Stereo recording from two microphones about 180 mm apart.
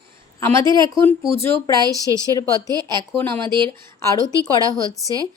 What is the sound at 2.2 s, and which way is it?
Speech, 20° left (ahead or behind).